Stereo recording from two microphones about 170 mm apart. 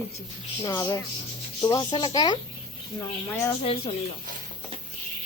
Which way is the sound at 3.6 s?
35° left (ahead or behind).